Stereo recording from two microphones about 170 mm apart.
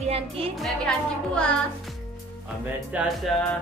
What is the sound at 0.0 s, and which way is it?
Music, 35° right (ahead or behind).